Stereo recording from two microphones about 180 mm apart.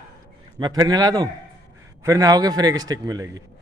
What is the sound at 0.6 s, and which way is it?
A man's voice, 20° right (ahead or behind).